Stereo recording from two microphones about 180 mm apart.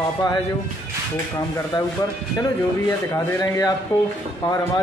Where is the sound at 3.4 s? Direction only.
20° left (ahead or behind).